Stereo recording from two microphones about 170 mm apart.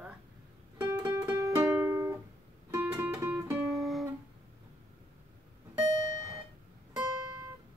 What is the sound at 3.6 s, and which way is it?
Music, centre (ahead or behind).